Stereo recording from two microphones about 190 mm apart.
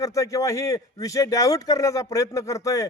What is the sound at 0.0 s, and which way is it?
A man's voice, 15° left (ahead or behind).